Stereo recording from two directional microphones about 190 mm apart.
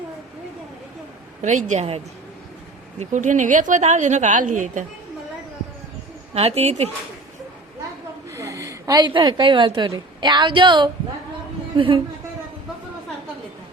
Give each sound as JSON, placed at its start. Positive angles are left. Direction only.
{"t": 1.4, "sound": "a woman's voice", "side_deg": -40}
{"t": 3.0, "sound": "a woman's voice", "side_deg": -40}
{"t": 6.3, "sound": "a woman's voice", "side_deg": -30}
{"t": 8.3, "sound": "a woman's voice", "side_deg": -15}